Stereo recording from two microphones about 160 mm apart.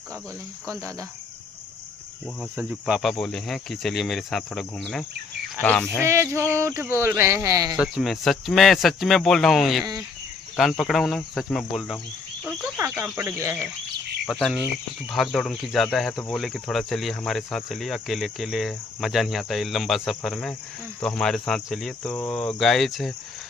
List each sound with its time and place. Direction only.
2.5 s cricket: 5° right (ahead or behind)
5.6 s speech: 10° left (ahead or behind)
6.0 s speech: 15° right (ahead or behind)
7.7 s cricket: 5° right (ahead or behind)
12.7 s speech: 10° right (ahead or behind)
14.2 s cricket: centre (ahead or behind)